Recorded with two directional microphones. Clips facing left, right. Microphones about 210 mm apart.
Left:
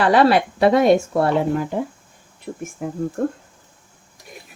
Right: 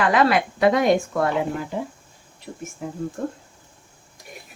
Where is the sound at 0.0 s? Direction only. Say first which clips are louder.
Left 4 dB; 35° left (ahead or behind).